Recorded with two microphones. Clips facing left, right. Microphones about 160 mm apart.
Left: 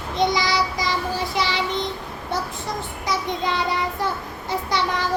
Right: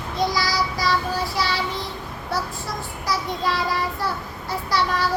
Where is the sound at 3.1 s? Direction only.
20° left (ahead or behind).